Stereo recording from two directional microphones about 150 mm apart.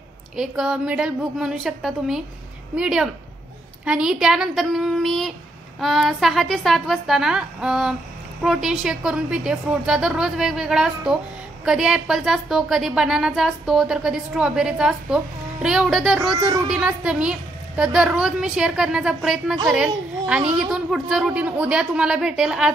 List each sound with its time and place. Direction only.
0.4 s a woman's voice: 5° right (ahead or behind)
16.3 s speech: 25° right (ahead or behind)
16.6 s a woman's voice: 5° right (ahead or behind)